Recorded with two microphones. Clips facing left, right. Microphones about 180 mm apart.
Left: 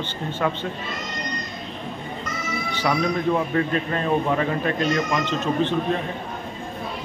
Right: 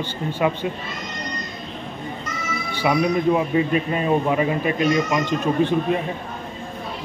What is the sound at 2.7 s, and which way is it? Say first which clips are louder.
A man's voice: right 3 dB; 10° right (ahead or behind).